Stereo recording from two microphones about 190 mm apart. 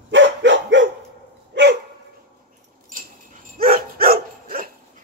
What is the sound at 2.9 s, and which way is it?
Dog, 45° right (ahead or behind).